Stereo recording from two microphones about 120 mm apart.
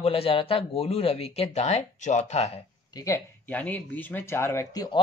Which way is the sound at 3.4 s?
10° left (ahead or behind).